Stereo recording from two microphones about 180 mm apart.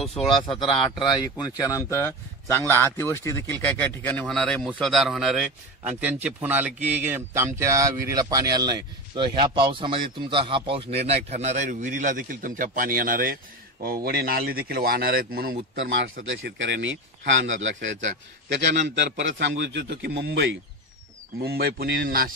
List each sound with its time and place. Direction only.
0.0 s speech: centre (ahead or behind)
0.3 s a man's voice: 25° left (ahead or behind); by 15.5 s 55° right (ahead or behind)
15.8 s a man's voice: 90° right
21.4 s a man's voice: 60° right (ahead or behind)